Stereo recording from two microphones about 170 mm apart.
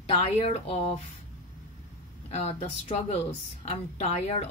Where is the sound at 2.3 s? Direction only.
35° left (ahead or behind).